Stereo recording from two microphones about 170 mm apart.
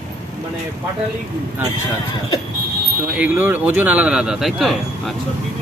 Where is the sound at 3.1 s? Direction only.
10° right (ahead or behind).